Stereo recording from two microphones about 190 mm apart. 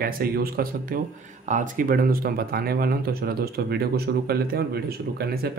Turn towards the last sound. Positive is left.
turn(degrees=-55)  # may be behind; listen again after turning